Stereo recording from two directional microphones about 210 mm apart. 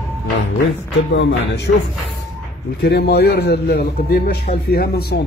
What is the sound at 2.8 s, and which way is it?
A man's voice, 50° left (ahead or behind).